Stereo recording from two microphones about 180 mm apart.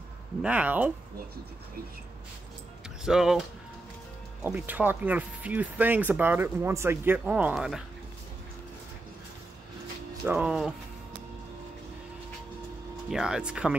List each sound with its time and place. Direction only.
0.4 s speech: 5° right (ahead or behind)
3.1 s speech: 5° right (ahead or behind)
10.2 s speech: 10° right (ahead or behind)
13.1 s speech: 5° right (ahead or behind)